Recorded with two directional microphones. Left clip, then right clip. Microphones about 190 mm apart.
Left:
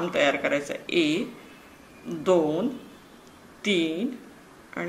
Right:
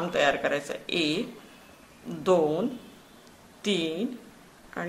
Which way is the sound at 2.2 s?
35° right (ahead or behind).